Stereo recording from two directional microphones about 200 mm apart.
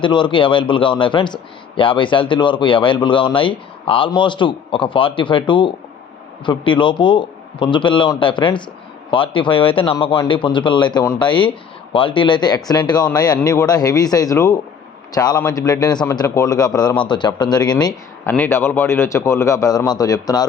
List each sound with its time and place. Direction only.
0.0 s a man's voice: 25° left (ahead or behind)